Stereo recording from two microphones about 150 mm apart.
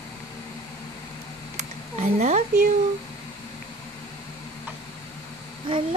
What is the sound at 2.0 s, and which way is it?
Speech, 50° right (ahead or behind).